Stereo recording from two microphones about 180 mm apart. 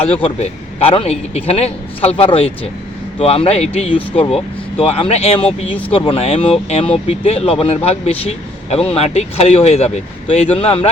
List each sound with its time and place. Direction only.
0.0 s speech: 30° left (ahead or behind)